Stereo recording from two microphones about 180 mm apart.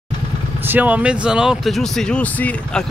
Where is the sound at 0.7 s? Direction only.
10° right (ahead or behind); by 2.8 s 10° left (ahead or behind).